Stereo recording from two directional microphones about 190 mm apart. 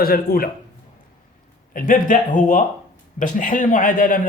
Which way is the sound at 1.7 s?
45° left (ahead or behind).